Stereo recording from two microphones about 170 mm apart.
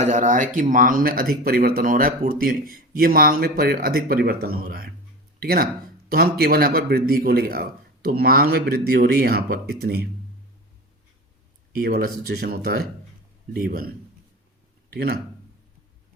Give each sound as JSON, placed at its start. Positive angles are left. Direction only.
{"t": 0.0, "sound": "speech", "side_deg": -45}
{"t": 11.8, "sound": "speech", "side_deg": -65}
{"t": 14.9, "sound": "speech", "side_deg": -65}